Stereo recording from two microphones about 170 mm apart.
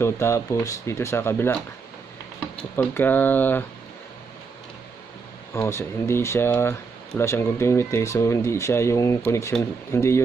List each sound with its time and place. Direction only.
0.0 s speech: 15° left (ahead or behind)
5.5 s speech: 15° left (ahead or behind)